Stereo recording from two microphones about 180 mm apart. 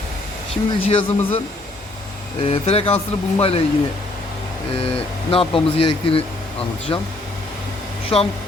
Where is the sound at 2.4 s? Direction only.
35° left (ahead or behind).